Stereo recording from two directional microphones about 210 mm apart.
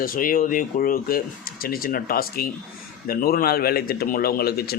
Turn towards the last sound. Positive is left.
turn(degrees=50)  # may be behind; listen again after turning